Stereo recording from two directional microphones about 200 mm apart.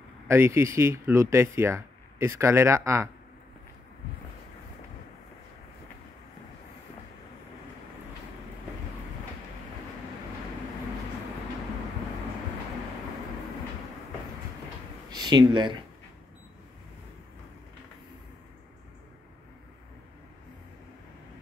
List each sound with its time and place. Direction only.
0.3 s speech: 15° right (ahead or behind)
15.0 s speech: 20° right (ahead or behind)